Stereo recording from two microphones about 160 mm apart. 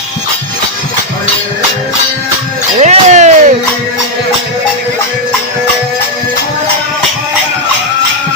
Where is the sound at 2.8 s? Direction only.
45° right (ahead or behind).